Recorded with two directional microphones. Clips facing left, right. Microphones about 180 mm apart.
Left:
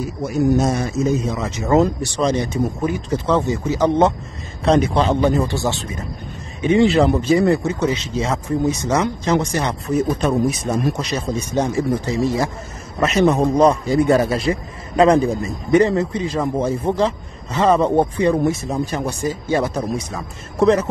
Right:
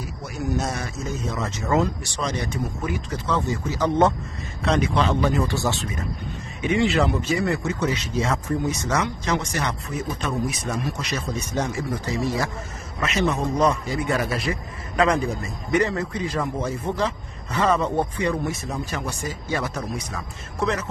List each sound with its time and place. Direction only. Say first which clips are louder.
0.6 s a man's voice: left 9 dB; 20° left (ahead or behind)
1.7 s a man's voice: left 7 dB; 35° left (ahead or behind)
4.6 s a man's voice: left 6 dB; 35° left (ahead or behind)
13.0 s a man's voice: left 8 dB; 40° left (ahead or behind)